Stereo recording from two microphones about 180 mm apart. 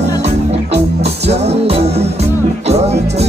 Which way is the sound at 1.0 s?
35° right (ahead or behind).